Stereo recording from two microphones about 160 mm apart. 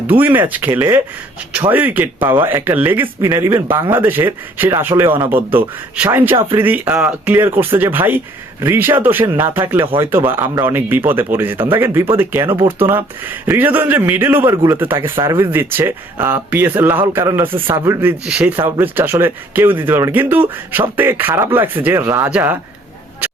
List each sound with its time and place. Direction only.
0.1 s speech: 10° right (ahead or behind)
18.3 s speech: 5° right (ahead or behind)